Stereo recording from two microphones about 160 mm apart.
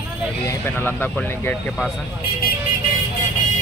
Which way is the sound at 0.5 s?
15° left (ahead or behind).